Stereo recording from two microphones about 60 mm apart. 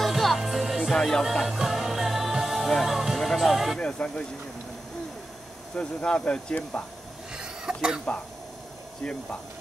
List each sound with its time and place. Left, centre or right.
0.0 s music: centre
0.9 s speech: centre
1.2 s music: centre
3.8 s speech: centre
5.8 s speech: centre
7.3 s a sound: centre
9.0 s speech: centre